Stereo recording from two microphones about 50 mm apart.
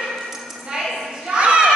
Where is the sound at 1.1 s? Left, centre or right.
Centre.